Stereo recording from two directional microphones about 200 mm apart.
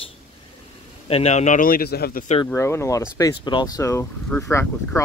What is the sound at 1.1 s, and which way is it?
A man's voice, 30° left (ahead or behind).